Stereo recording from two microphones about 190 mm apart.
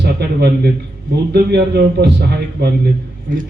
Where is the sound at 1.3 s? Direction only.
60° right (ahead or behind).